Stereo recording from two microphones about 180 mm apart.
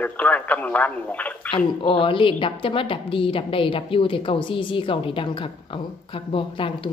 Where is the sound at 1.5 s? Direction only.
30° left (ahead or behind).